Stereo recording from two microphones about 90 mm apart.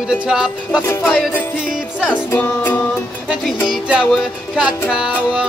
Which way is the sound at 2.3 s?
20° left (ahead or behind).